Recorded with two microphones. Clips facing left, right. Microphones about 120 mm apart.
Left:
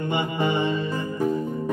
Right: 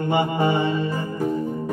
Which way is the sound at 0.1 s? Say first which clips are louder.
Right 5 dB; 45° right (ahead or behind).